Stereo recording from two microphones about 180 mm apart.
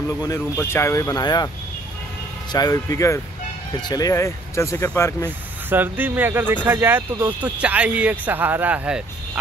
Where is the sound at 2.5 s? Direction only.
20° left (ahead or behind).